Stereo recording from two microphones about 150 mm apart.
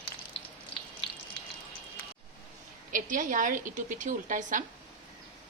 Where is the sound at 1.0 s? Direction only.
40° left (ahead or behind).